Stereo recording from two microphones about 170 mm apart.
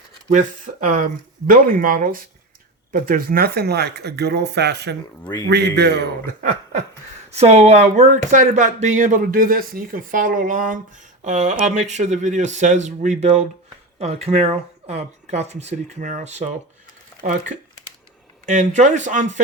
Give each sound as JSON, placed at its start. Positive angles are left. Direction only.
{"t": 0.3, "sound": "speech", "side_deg": -50}
{"t": 7.3, "sound": "speech", "side_deg": -40}
{"t": 17.5, "sound": "speech", "side_deg": -45}